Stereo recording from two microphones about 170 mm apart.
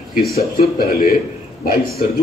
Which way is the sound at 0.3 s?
60° left (ahead or behind).